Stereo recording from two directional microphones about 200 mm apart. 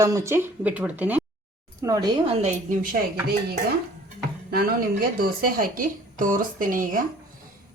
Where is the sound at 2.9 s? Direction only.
45° right (ahead or behind).